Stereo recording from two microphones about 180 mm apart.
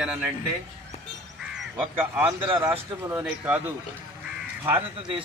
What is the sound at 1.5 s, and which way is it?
Speech, 5° right (ahead or behind).